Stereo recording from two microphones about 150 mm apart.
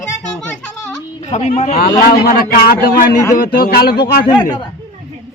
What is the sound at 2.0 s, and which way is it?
A man's voice, 80° left.